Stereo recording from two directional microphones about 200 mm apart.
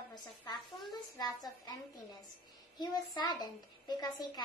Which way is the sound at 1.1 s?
20° left (ahead or behind).